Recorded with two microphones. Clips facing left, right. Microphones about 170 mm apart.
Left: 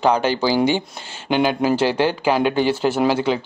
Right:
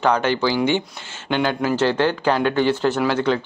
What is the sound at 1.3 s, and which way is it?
A man's voice, 15° left (ahead or behind).